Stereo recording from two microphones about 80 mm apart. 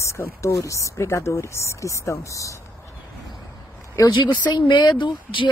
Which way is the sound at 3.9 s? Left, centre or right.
Left.